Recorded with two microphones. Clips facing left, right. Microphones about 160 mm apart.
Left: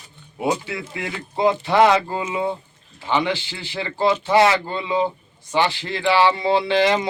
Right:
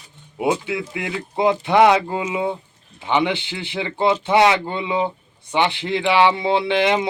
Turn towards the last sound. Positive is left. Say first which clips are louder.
# even
turn(degrees=-20)  # may be behind; listen again after turning